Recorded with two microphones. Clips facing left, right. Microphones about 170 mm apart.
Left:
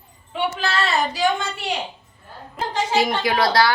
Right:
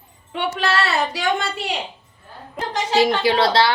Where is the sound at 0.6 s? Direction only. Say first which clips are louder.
Right 3 dB; 70° right (ahead or behind).